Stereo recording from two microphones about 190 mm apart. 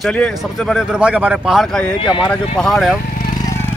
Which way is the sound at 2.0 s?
25° left (ahead or behind).